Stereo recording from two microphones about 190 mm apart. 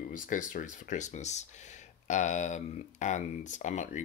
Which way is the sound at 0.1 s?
45° left (ahead or behind).